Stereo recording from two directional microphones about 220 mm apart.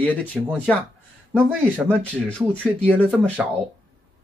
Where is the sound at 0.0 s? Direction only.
5° left (ahead or behind).